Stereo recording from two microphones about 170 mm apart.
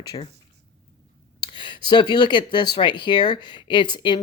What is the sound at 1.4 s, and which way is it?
Speech, 30° left (ahead or behind).